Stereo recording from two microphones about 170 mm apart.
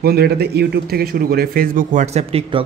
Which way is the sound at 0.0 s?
65° right (ahead or behind).